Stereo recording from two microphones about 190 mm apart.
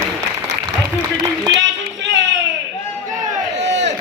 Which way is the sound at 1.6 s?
70° right (ahead or behind).